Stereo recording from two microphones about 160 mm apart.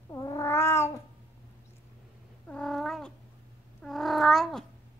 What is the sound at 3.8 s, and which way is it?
Babbling, centre (ahead or behind).